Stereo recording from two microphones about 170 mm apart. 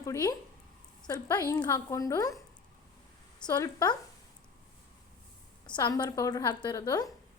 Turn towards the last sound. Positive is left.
turn(degrees=20)  # may be behind; listen again after turning